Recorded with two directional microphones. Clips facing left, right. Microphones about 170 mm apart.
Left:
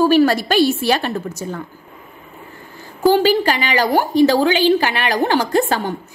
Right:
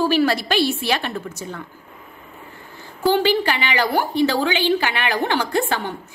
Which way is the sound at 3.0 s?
40° left (ahead or behind).